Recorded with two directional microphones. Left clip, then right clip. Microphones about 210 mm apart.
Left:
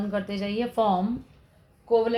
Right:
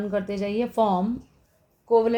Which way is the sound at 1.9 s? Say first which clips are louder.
Right 2 dB; 55° right (ahead or behind).